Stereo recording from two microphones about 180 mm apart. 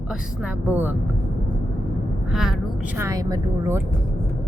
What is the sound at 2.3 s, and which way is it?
Speech, centre (ahead or behind).